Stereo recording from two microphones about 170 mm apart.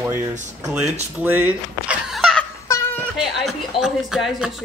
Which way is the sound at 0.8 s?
10° right (ahead or behind).